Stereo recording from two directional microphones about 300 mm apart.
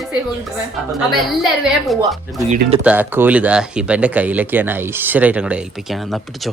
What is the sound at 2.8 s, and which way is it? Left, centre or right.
Speech, centre.